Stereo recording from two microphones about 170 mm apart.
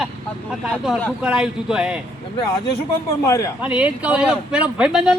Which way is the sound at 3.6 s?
5° right (ahead or behind).